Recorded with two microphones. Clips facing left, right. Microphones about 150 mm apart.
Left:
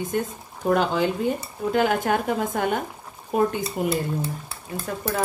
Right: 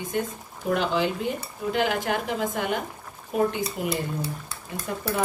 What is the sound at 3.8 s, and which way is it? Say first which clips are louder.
Speech: left 5 dB; 45° left (ahead or behind).